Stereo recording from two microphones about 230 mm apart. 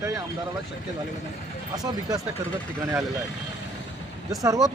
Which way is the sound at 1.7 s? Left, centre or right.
Centre.